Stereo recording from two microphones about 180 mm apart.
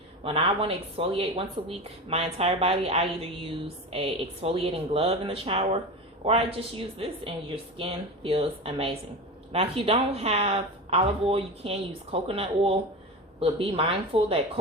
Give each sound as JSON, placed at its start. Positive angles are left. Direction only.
{"t": 0.3, "sound": "a woman's voice", "side_deg": -30}